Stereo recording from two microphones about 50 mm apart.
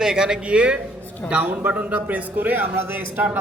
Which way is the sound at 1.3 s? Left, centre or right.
Right.